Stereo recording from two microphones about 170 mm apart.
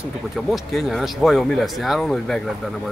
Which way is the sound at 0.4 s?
Centre (ahead or behind).